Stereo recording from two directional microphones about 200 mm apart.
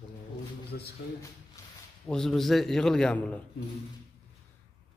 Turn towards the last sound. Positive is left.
turn(degrees=5)  # may be behind; listen again after turning